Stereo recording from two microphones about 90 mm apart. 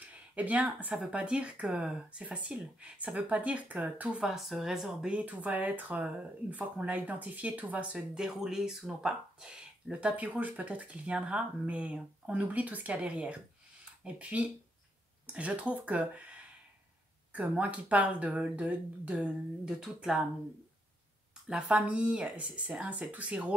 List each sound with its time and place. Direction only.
0.1 s speech: 15° right (ahead or behind)
5.1 s speech: 15° right (ahead or behind)
17.3 s speech: 15° right (ahead or behind)
21.5 s speech: 10° right (ahead or behind)